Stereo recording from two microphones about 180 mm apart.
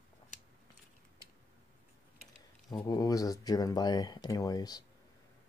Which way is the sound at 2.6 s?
20° left (ahead or behind).